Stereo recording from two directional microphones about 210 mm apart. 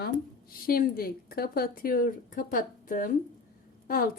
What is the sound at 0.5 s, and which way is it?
A woman's voice, 45° left (ahead or behind).